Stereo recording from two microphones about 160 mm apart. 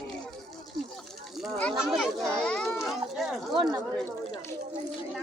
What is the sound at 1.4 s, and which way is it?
Children playing, 5° left (ahead or behind).